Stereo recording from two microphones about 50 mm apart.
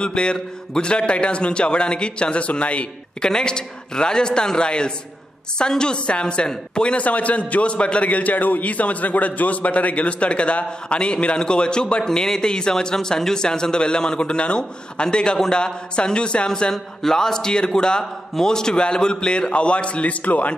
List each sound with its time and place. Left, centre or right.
0.0 s a man's voice: centre
3.3 s a man's voice: centre